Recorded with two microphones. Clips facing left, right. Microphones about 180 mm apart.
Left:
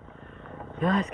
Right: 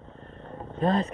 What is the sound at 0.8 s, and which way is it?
Speech, 35° right (ahead or behind).